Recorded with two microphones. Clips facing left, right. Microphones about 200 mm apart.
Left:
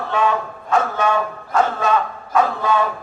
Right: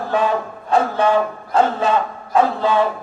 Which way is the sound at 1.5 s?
30° right (ahead or behind).